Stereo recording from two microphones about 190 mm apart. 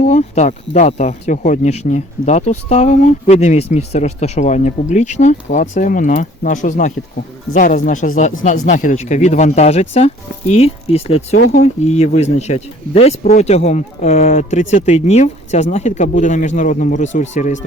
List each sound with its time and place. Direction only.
0.0 s speech: 40° left (ahead or behind)